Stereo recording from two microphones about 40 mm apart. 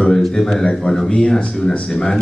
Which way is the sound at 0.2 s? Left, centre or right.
Centre.